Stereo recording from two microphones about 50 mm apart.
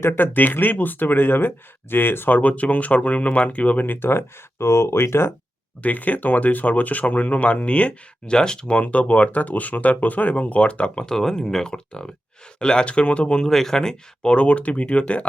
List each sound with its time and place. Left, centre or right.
0.0 s speech: left
2.4 s speech: left
4.0 s speech: left
5.8 s speech: left
8.3 s speech: centre
11.0 s speech: centre; by 15.3 s left